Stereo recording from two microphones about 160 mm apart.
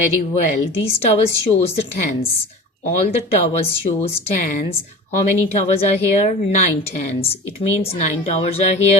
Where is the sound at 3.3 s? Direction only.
40° left (ahead or behind).